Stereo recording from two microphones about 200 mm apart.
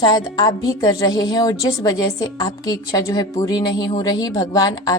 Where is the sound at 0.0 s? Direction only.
20° left (ahead or behind).